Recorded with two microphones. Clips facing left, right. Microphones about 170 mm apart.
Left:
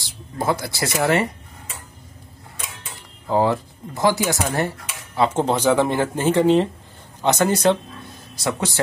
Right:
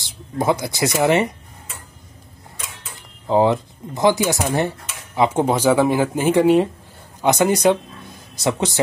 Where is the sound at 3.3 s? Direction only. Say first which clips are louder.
Right 3 dB; 20° right (ahead or behind).